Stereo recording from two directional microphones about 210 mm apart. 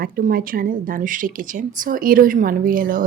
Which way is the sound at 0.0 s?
45° right (ahead or behind).